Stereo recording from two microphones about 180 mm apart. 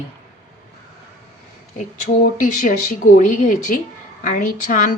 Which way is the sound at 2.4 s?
45° left (ahead or behind).